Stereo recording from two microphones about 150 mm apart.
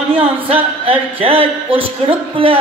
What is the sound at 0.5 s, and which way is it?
A man's voice, 40° right (ahead or behind).